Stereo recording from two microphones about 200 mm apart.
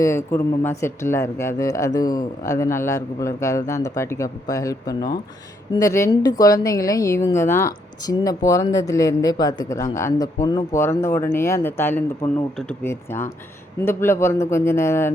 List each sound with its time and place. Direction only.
0.0 s speech: 15° left (ahead or behind)